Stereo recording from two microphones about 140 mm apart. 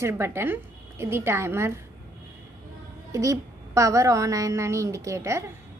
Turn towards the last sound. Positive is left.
turn(degrees=-20)  # may be behind; listen again after turning